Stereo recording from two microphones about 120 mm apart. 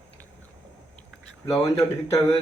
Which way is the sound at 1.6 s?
30° left (ahead or behind).